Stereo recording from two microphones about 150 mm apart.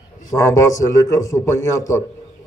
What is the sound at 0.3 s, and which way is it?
A man's voice, 20° left (ahead or behind).